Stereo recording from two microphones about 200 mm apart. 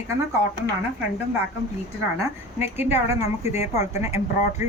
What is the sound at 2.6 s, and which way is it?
A woman's voice, 10° right (ahead or behind).